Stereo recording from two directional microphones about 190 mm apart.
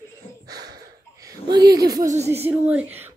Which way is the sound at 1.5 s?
20° right (ahead or behind).